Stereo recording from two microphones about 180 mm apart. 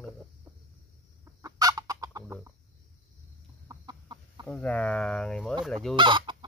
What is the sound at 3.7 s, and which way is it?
Chicken, 25° right (ahead or behind).